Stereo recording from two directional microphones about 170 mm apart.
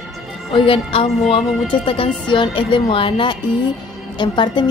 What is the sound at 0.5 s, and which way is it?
Speech, 30° left (ahead or behind).